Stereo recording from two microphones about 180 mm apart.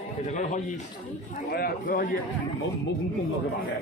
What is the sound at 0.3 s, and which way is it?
Speech, 40° left (ahead or behind).